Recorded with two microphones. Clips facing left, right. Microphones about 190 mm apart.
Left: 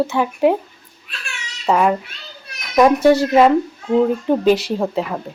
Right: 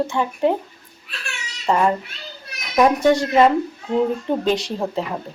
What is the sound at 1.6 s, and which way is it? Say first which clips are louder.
Speech: left 2 dB; 5° left (ahead or behind).